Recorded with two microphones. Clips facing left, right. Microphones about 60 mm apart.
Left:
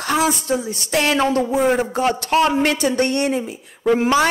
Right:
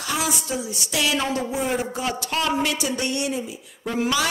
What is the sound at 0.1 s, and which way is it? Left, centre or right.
A man's voice, left.